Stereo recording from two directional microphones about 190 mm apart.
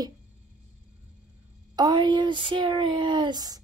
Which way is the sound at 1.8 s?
25° right (ahead or behind).